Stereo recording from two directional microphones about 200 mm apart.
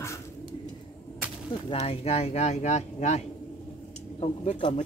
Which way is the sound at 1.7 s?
30° left (ahead or behind).